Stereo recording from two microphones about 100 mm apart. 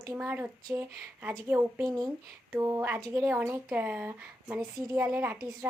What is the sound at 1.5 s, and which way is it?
A woman's voice, 20° right (ahead or behind).